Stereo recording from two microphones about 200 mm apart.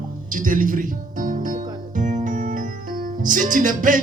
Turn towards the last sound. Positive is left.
turn(degrees=-40)  # may be behind; listen again after turning